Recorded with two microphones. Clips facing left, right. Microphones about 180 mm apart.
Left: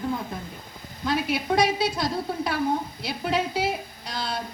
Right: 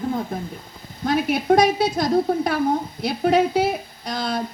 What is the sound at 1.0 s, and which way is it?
A woman's voice, 50° right (ahead or behind).